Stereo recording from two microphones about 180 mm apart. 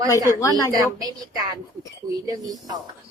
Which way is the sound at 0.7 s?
20° right (ahead or behind).